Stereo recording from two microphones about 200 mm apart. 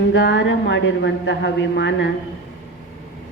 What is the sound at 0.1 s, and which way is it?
A woman's voice, 60° left (ahead or behind).